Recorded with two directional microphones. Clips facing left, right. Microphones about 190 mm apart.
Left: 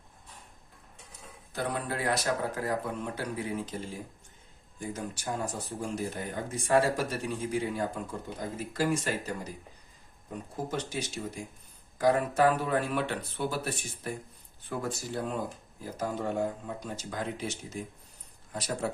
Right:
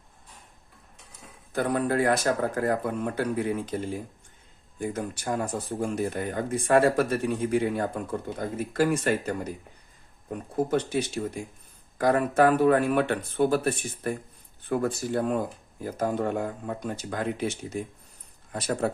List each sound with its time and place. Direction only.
1.5 s speech: 50° right (ahead or behind)
4.8 s speech: 55° right (ahead or behind)
10.7 s speech: 55° right (ahead or behind)
18.5 s speech: 55° right (ahead or behind)